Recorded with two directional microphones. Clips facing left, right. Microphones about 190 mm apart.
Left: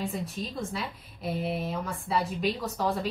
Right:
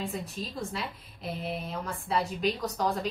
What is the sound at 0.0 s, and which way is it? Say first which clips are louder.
A woman's voice: left 2 dB; centre (ahead or behind).